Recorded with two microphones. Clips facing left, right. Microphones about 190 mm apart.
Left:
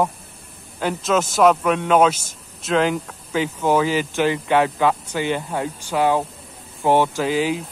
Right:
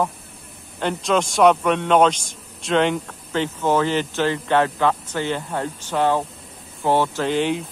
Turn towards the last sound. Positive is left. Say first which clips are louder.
# even
turn(degrees=5)  # may be behind; listen again after turning